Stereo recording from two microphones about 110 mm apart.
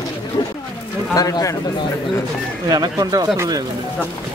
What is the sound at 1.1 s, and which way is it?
Speech, 30° left (ahead or behind).